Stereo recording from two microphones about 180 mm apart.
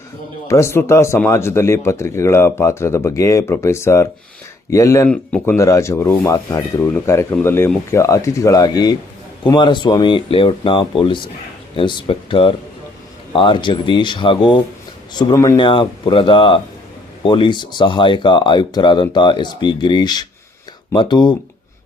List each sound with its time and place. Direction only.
0.4 s speech: 15° left (ahead or behind)
5.1 s speech: 5° left (ahead or behind)
5.5 s speech: 15° left (ahead or behind)